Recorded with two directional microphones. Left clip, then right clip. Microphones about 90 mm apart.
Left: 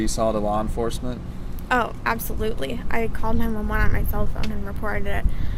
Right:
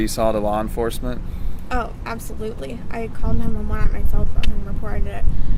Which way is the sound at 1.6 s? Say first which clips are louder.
Left 5 dB; 30° left (ahead or behind).